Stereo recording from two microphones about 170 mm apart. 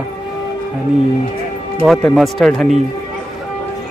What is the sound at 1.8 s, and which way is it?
Speech, centre (ahead or behind).